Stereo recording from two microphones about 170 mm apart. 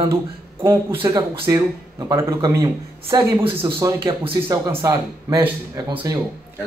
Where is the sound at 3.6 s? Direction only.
30° right (ahead or behind).